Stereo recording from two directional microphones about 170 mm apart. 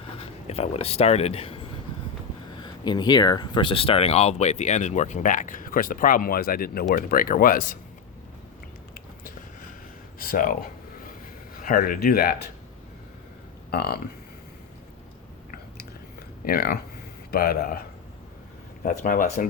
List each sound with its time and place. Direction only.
0.2 s speech: 35° left (ahead or behind); by 7.8 s 55° left (ahead or behind)
9.0 s biting: 55° left (ahead or behind)
10.2 s a sound: 55° left (ahead or behind)
11.5 s speech: 60° left (ahead or behind)
13.7 s speech: 65° left (ahead or behind)
16.4 s speech: 65° left (ahead or behind)